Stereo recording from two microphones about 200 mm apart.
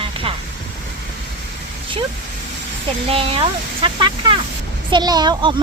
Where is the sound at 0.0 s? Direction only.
25° right (ahead or behind).